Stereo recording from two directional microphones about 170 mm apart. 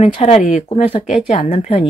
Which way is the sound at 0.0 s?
40° left (ahead or behind).